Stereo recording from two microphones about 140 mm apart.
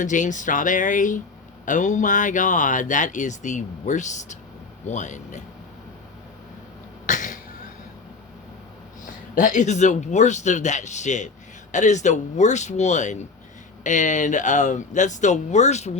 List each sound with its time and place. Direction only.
0.0 s speech: 65° left (ahead or behind)
7.1 s cough: 65° left (ahead or behind)
9.3 s speech: 65° left (ahead or behind)